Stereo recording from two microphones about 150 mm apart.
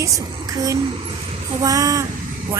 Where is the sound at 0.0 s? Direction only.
20° right (ahead or behind).